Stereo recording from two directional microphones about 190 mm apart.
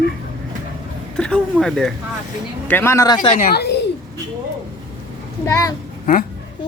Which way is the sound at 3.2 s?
40° left (ahead or behind).